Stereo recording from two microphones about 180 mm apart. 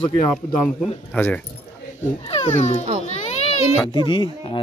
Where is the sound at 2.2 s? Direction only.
35° left (ahead or behind).